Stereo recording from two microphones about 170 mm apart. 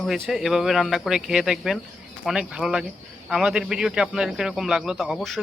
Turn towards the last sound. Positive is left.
turn(degrees=0)  # may be behind; listen again after turning